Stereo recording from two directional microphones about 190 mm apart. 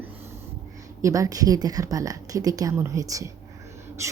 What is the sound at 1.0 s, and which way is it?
A woman's voice, 15° right (ahead or behind).